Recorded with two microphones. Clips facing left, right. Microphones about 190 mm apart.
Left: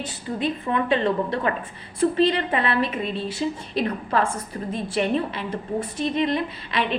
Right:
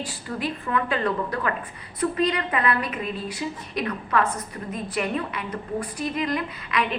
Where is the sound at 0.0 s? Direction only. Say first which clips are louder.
Left 3 dB; 20° left (ahead or behind).